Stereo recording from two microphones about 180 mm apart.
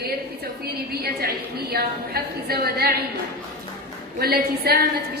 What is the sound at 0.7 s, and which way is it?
A woman's voice, 60° right (ahead or behind).